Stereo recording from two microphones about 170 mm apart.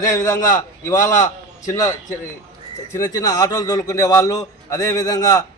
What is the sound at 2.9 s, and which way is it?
A man's voice, 20° left (ahead or behind).